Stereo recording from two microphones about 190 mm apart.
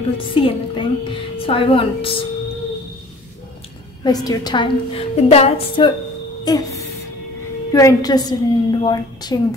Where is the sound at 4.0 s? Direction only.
20° left (ahead or behind).